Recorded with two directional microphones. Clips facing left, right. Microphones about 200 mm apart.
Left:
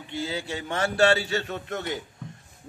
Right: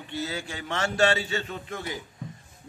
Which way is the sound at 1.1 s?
65° left (ahead or behind).